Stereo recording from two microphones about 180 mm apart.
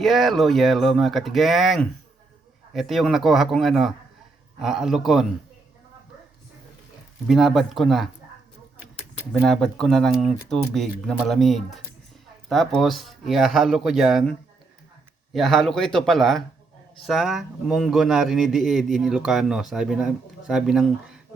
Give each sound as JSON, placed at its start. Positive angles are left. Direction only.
{"t": 0.0, "sound": "speech", "side_deg": 0}
{"t": 7.3, "sound": "speech", "side_deg": 0}
{"t": 9.4, "sound": "speech", "side_deg": 0}